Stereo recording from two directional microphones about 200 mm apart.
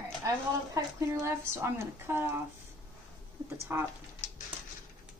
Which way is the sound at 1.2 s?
15° right (ahead or behind).